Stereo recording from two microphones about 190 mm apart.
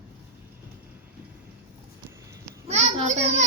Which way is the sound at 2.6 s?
35° right (ahead or behind).